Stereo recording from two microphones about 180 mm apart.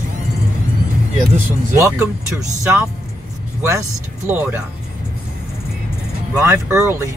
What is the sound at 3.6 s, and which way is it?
Speech, 15° right (ahead or behind).